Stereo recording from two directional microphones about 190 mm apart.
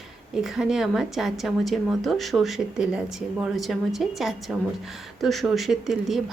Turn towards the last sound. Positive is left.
turn(degrees=0)  # may be behind; listen again after turning